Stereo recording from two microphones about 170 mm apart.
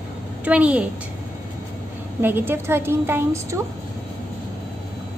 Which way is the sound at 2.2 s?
10° right (ahead or behind).